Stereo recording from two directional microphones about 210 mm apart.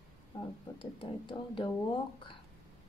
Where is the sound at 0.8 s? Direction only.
25° left (ahead or behind).